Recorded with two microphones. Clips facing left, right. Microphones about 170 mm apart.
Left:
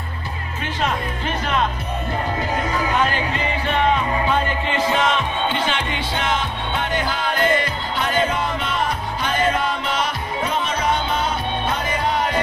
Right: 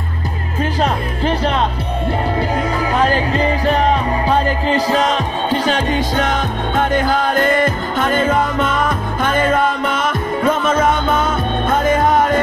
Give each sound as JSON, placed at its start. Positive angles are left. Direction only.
{"t": 0.7, "sound": "music", "side_deg": -35}
{"t": 2.9, "sound": "music", "side_deg": -35}